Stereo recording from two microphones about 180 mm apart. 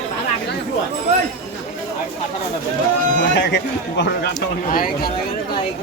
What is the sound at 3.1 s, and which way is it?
Speech, 65° left (ahead or behind).